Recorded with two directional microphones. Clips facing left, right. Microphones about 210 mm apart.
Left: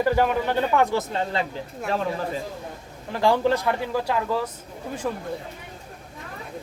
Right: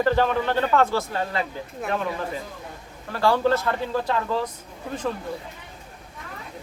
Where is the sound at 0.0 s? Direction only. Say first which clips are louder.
Even; 10° left (ahead or behind).